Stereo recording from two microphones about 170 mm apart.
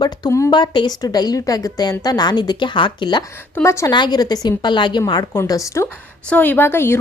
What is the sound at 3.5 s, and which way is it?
A woman's voice, 15° left (ahead or behind).